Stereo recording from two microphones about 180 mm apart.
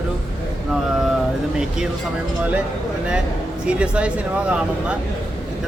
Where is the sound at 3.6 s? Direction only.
5° right (ahead or behind).